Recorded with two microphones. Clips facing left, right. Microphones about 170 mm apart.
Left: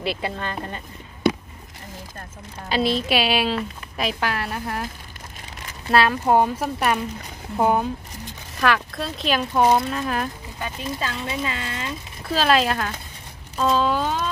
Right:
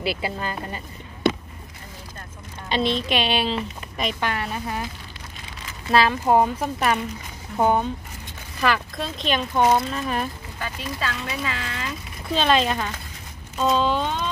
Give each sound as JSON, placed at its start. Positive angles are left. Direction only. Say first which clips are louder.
{"t": 0.0, "sound": "speech", "louder": "even", "side_deg": -5}
{"t": 2.7, "sound": "speech", "louder": "left 1 dB", "side_deg": 5}
{"t": 5.9, "sound": "speech", "louder": "even", "side_deg": 0}
{"t": 10.6, "sound": "speech", "louder": "left 1 dB", "side_deg": 25}
{"t": 12.3, "sound": "speech", "louder": "left 1 dB", "side_deg": 0}